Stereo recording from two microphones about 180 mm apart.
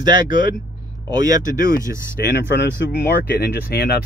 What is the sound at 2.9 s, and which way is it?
Speech, 60° left (ahead or behind).